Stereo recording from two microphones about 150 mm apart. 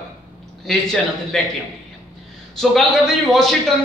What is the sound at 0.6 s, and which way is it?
Speech, centre (ahead or behind).